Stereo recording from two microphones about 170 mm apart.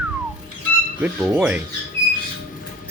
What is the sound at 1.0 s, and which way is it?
Speech, 5° right (ahead or behind).